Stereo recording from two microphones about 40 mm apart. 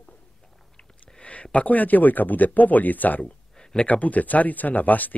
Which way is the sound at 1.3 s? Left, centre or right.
Left.